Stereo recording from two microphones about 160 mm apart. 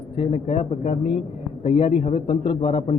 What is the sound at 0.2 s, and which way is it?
A man's voice, 40° left (ahead or behind).